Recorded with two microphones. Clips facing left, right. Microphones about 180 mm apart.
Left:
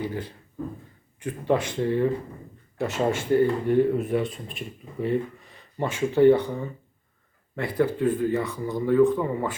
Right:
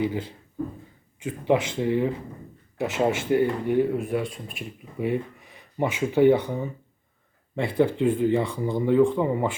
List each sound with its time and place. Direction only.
0.0 s speech: 15° right (ahead or behind)
1.8 s speech: 15° right (ahead or behind)